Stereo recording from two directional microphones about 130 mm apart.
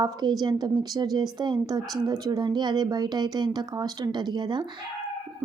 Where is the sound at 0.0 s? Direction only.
30° right (ahead or behind).